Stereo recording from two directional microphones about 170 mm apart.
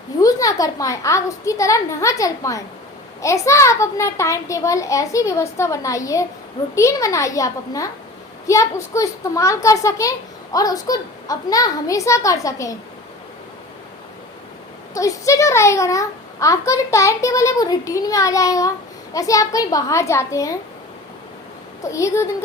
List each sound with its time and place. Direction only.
0.2 s a child's voice: 20° left (ahead or behind)
14.9 s a child's voice: 20° left (ahead or behind)
21.8 s a child's voice: 15° left (ahead or behind)